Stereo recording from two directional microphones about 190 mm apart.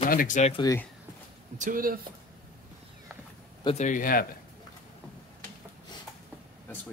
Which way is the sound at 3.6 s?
30° left (ahead or behind).